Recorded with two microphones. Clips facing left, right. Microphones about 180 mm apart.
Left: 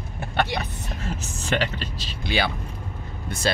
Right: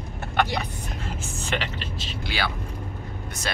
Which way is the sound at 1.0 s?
40° left (ahead or behind).